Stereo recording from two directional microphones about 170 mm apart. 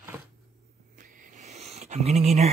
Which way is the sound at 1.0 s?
45° right (ahead or behind).